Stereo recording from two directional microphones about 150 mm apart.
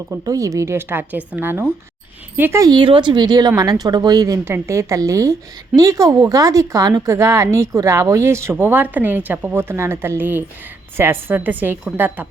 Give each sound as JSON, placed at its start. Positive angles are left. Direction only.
{"t": 0.1, "sound": "a woman's voice", "side_deg": -20}